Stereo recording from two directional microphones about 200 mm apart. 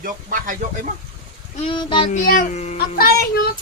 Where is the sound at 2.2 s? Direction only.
45° left (ahead or behind).